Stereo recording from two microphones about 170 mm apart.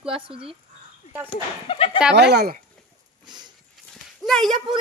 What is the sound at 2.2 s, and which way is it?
Speech, 70° right (ahead or behind).